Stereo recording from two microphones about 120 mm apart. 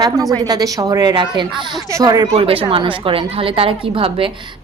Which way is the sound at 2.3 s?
50° right (ahead or behind).